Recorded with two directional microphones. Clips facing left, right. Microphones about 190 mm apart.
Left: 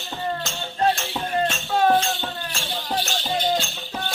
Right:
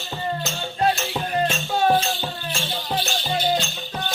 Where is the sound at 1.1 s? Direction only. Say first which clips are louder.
Right 1 dB; 5° right (ahead or behind).